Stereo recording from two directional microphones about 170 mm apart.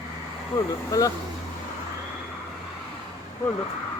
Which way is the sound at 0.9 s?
20° left (ahead or behind).